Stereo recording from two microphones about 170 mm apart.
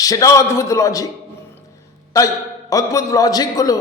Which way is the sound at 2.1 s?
20° left (ahead or behind).